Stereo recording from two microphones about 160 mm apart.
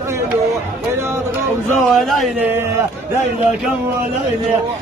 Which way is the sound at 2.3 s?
10° right (ahead or behind).